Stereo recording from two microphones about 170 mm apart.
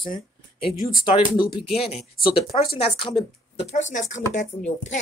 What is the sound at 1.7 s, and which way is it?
Speech, 35° left (ahead or behind).